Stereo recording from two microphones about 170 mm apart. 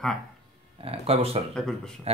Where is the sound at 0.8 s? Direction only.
35° right (ahead or behind).